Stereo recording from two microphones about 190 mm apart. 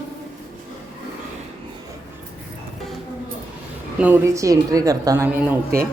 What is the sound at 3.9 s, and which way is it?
A woman's voice, 10° right (ahead or behind).